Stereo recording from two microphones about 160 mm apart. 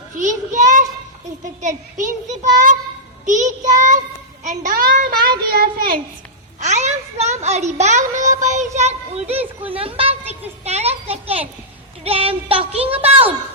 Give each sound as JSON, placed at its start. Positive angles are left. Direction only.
{"t": 0.2, "sound": "a child's voice", "side_deg": -50}
{"t": 5.5, "sound": "a child's voice", "side_deg": -70}
{"t": 6.6, "sound": "a child's voice", "side_deg": -45}
{"t": 10.6, "sound": "music", "side_deg": -40}